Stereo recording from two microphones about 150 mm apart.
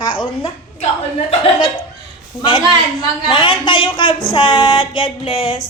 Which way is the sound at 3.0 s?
30° left (ahead or behind).